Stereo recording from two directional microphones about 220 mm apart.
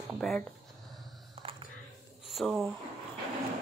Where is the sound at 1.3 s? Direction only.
25° right (ahead or behind).